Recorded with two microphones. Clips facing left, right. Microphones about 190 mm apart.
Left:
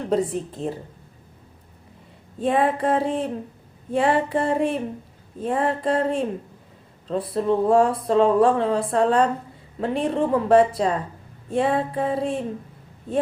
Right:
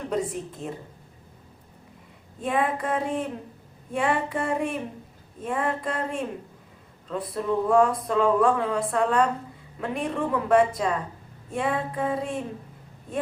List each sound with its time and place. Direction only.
0.1 s speech: 30° left (ahead or behind)
2.4 s speech: 30° left (ahead or behind)